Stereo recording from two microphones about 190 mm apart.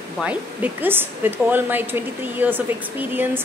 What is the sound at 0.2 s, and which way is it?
Speech, 10° right (ahead or behind).